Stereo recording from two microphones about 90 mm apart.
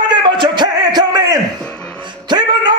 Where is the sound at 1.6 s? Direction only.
10° left (ahead or behind).